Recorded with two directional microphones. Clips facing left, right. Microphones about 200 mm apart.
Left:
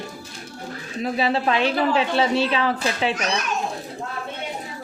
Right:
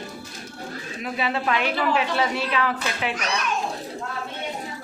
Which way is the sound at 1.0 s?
30° left (ahead or behind).